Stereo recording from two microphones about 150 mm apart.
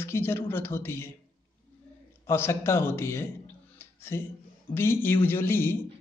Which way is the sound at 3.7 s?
15° left (ahead or behind).